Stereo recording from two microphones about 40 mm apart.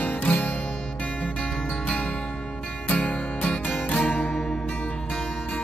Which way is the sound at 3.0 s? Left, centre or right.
Left.